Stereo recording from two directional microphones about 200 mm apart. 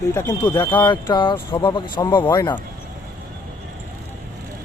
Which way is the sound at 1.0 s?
25° left (ahead or behind).